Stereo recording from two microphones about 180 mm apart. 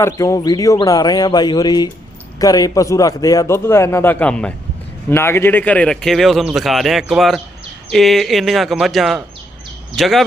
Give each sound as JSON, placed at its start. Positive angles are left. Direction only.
{"t": 0.0, "sound": "a man's voice", "side_deg": 20}